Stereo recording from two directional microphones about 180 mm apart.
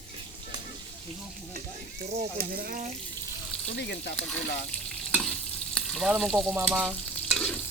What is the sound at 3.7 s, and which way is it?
Speech, 70° left (ahead or behind).